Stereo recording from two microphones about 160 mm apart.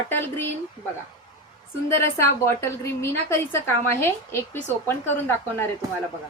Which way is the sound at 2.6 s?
15° left (ahead or behind).